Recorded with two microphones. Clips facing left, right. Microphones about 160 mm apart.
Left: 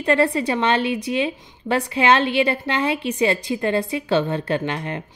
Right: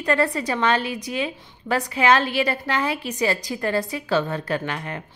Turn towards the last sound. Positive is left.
turn(degrees=25)  # may be behind; listen again after turning